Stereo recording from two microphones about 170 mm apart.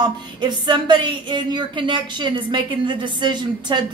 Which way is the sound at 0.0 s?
25° right (ahead or behind).